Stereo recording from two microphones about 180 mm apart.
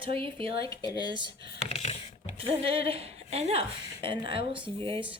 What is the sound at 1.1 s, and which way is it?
Speech, 25° right (ahead or behind).